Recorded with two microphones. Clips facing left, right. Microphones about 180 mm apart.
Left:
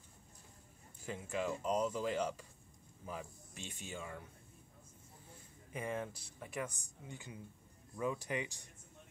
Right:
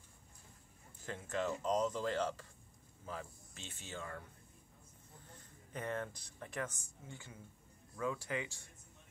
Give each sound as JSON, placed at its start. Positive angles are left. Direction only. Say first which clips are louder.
{"t": 1.0, "sound": "speech", "louder": "even", "side_deg": 10}
{"t": 5.3, "sound": "speech", "louder": "left 1 dB", "side_deg": 10}